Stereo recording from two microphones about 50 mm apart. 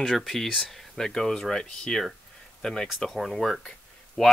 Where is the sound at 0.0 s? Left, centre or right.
Centre.